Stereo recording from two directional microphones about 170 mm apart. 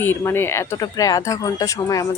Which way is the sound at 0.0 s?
15° left (ahead or behind).